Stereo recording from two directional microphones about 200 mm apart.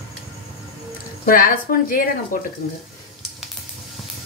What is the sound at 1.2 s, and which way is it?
Speech, 45° left (ahead or behind).